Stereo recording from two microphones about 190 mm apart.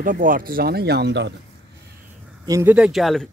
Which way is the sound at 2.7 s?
5° right (ahead or behind).